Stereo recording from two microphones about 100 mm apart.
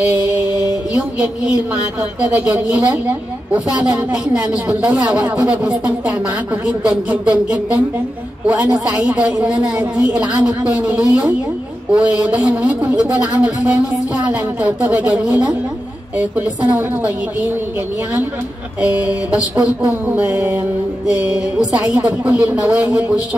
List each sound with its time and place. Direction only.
0.1 s mantra: 15° right (ahead or behind)
0.9 s a woman's voice: 10° right (ahead or behind)
18.8 s a woman's voice: 15° right (ahead or behind)